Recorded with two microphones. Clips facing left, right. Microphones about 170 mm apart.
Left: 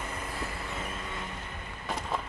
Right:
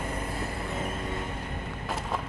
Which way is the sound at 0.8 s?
45° right (ahead or behind).